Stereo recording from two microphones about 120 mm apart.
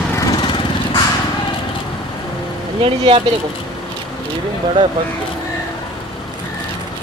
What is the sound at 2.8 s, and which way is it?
Speech, 50° right (ahead or behind).